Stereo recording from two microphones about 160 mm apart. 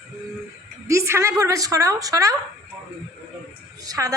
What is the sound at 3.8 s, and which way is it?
Speech, 20° right (ahead or behind).